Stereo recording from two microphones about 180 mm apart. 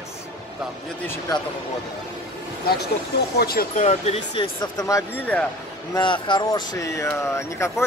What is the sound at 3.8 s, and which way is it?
Speech, 35° left (ahead or behind).